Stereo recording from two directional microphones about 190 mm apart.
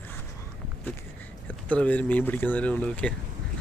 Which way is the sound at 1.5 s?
10° left (ahead or behind).